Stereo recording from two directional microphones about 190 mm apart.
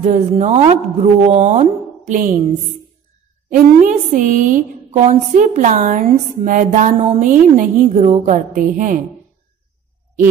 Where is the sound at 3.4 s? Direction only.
45° right (ahead or behind).